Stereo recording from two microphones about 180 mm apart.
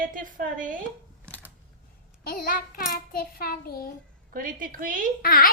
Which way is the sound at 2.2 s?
50° left (ahead or behind).